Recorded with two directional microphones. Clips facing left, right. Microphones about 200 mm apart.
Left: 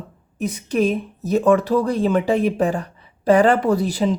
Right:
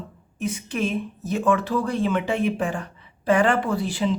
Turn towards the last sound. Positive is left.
turn(degrees=40)  # may be behind; listen again after turning